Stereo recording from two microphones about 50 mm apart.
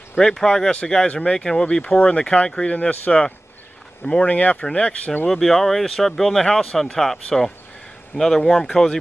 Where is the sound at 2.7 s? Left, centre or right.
Left.